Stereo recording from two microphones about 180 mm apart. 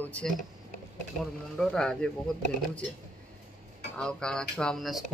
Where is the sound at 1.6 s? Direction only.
5° left (ahead or behind).